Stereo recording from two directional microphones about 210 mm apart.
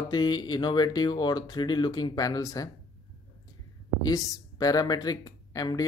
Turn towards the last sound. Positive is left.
turn(degrees=15)  # may be behind; listen again after turning